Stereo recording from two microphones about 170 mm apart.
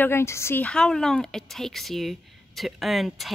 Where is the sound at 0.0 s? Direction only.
15° left (ahead or behind).